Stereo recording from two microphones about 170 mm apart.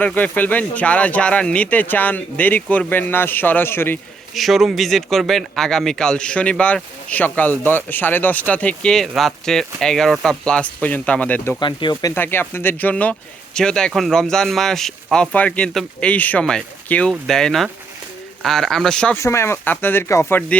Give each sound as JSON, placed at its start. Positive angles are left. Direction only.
{"t": 0.0, "sound": "speech", "side_deg": 10}
{"t": 4.4, "sound": "speech", "side_deg": 0}
{"t": 11.6, "sound": "speech", "side_deg": 25}
{"t": 12.1, "sound": "speech", "side_deg": 10}
{"t": 19.1, "sound": "speech", "side_deg": 15}